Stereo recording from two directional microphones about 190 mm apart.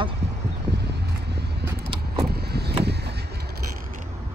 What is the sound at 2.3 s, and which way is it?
Vehicle, 60° right (ahead or behind).